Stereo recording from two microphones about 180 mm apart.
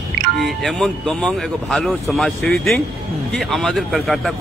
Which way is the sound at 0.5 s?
Centre (ahead or behind).